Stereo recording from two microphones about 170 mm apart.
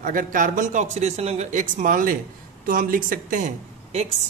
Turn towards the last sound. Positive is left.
turn(degrees=-45)  # may be behind; listen again after turning